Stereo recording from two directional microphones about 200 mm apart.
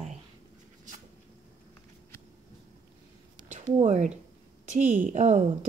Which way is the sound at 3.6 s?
35° right (ahead or behind).